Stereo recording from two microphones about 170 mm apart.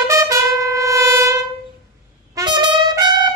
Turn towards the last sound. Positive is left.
turn(degrees=-25)  # may be behind; listen again after turning